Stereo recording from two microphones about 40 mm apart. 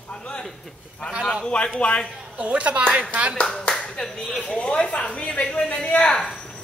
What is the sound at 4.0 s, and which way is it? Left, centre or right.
A woman's voice, centre.